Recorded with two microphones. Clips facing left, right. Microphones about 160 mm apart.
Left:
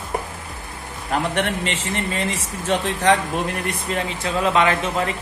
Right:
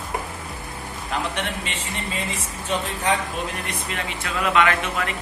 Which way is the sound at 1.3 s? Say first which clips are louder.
Left 6 dB; 75° left (ahead or behind).